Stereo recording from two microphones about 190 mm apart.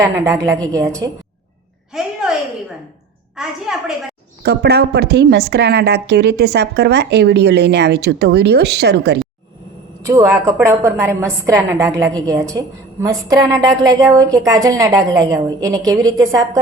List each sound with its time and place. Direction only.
0.3 s a woman's voice: 15° right (ahead or behind)
1.9 s a sound: 5° right (ahead or behind)
3.3 s a woman's voice: centre (ahead or behind)
4.4 s a woman's voice: 60° right (ahead or behind)
10.0 s a woman's voice: 15° right (ahead or behind)